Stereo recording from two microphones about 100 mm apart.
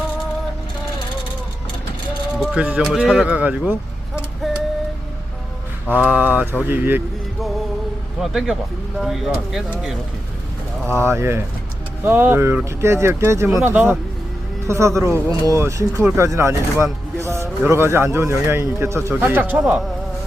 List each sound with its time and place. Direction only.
2.4 s speech: 10° right (ahead or behind)
4.1 s a sound: 10° right (ahead or behind)
5.9 s mantra: 15° right (ahead or behind)
6.7 s speech: 20° right (ahead or behind)
8.2 s speech: 5° right (ahead or behind)
10.8 s speech: 25° right (ahead or behind)